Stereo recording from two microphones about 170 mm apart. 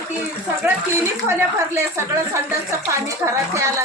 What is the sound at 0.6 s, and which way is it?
Speech, 10° right (ahead or behind).